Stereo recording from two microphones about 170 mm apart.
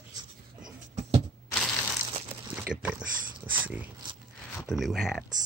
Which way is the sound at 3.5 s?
10° right (ahead or behind).